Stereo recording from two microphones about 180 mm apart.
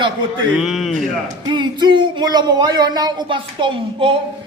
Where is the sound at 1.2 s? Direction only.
25° right (ahead or behind).